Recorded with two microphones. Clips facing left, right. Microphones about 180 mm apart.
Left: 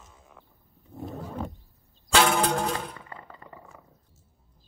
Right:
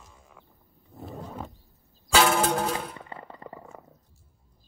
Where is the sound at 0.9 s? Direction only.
Centre (ahead or behind).